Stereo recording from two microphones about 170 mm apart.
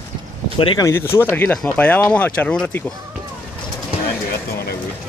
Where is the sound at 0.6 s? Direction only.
30° left (ahead or behind).